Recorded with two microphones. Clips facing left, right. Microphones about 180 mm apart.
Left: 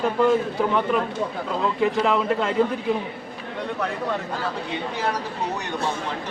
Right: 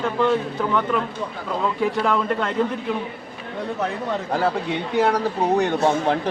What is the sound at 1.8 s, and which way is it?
Speech, centre (ahead or behind).